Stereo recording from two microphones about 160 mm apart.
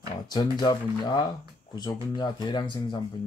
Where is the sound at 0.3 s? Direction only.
25° left (ahead or behind).